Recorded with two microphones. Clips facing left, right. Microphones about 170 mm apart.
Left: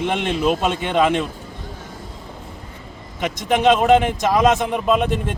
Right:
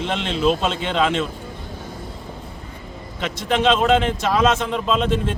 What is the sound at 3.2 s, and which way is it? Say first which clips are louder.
A man's voice: left 3 dB; 15° left (ahead or behind).